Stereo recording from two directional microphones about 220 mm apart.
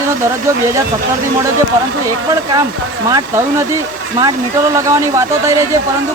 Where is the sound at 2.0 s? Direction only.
15° right (ahead or behind).